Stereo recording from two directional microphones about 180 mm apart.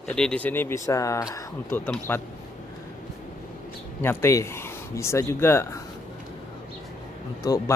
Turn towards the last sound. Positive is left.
turn(degrees=20)  # may be behind; listen again after turning